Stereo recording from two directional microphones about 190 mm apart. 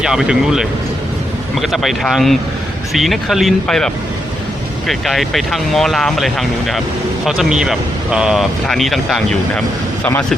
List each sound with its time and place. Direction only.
0.0 s speech: 5° right (ahead or behind)